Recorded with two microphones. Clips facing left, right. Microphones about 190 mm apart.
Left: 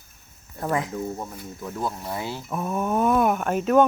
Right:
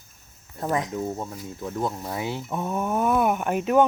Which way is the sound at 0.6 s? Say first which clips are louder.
Even; 20° right (ahead or behind).